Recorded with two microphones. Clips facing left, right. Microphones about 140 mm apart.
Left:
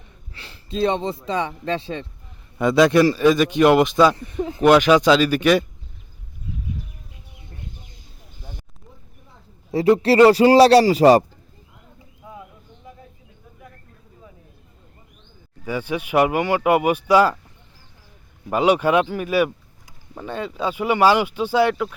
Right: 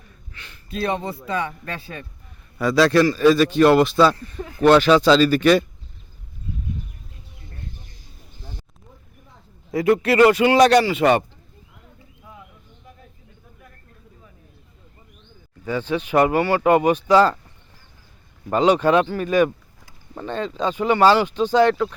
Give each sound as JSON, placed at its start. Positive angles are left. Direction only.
{"t": 0.0, "sound": "a sound", "side_deg": 30}
{"t": 0.8, "sound": "speech", "side_deg": 25}
{"t": 7.3, "sound": "bird", "side_deg": 15}
{"t": 9.7, "sound": "speech", "side_deg": 30}
{"t": 15.6, "sound": "speech", "side_deg": 10}
{"t": 18.4, "sound": "speech", "side_deg": 10}